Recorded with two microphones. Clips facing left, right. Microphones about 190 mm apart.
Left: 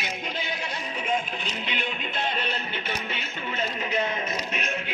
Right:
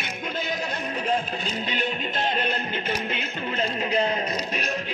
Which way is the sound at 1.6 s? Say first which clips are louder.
Right 5 dB; 45° right (ahead or behind).